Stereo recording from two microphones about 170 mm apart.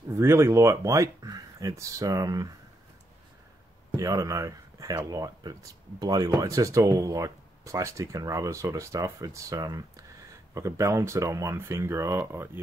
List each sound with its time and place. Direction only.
0.1 s speech: 15° right (ahead or behind)
3.9 s speech: 20° right (ahead or behind)